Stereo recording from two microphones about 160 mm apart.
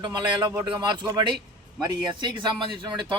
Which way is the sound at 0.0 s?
30° right (ahead or behind).